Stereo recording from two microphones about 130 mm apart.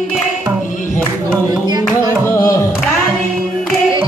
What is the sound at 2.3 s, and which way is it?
Music, 25° left (ahead or behind).